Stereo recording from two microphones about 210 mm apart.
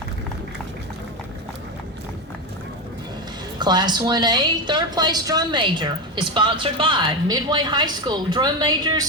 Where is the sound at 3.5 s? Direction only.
20° right (ahead or behind).